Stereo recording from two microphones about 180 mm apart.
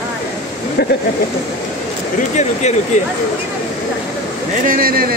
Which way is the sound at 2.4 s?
40° left (ahead or behind).